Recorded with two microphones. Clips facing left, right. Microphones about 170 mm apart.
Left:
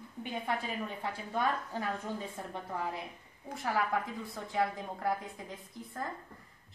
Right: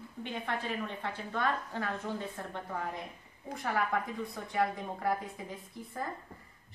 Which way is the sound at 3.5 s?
Centre (ahead or behind).